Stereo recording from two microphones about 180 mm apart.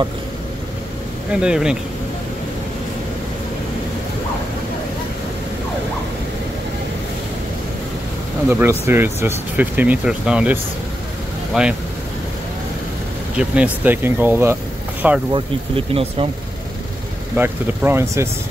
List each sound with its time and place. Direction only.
1.3 s speech: 5° right (ahead or behind)
8.5 s speech: 10° right (ahead or behind)
13.4 s speech: 10° right (ahead or behind)
15.3 s speech: 30° right (ahead or behind)
17.4 s speech: 15° right (ahead or behind)